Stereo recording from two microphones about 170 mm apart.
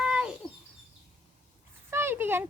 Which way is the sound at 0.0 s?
5° right (ahead or behind).